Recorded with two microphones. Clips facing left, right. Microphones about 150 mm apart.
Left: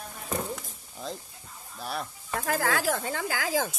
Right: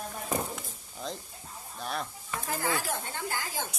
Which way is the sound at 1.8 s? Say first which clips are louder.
Left 1 dB; 5° left (ahead or behind).